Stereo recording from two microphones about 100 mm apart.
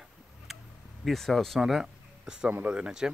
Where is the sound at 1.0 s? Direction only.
5° left (ahead or behind).